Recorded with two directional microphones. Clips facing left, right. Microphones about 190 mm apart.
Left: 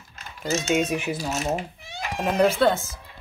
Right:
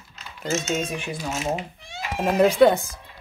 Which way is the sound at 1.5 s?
Centre (ahead or behind).